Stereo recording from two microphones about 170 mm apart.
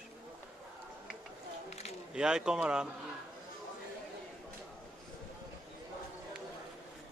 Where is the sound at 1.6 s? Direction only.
40° left (ahead or behind).